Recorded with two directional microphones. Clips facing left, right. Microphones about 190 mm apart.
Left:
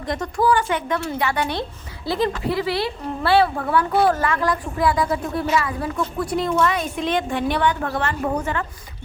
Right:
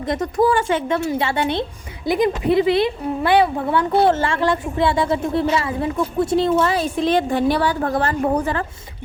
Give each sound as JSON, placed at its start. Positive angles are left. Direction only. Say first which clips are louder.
{"t": 0.0, "sound": "a woman's voice", "louder": "right 3 dB", "side_deg": -20}